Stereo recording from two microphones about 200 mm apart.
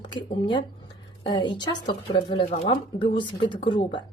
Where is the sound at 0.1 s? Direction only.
25° left (ahead or behind).